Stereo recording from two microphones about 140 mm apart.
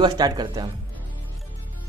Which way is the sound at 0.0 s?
30° right (ahead or behind).